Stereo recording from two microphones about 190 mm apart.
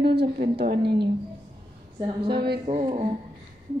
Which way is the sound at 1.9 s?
25° right (ahead or behind).